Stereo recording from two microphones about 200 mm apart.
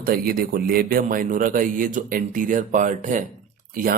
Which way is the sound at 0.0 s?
50° right (ahead or behind).